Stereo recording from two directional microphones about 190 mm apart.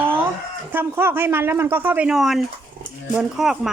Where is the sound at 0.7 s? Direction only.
10° right (ahead or behind).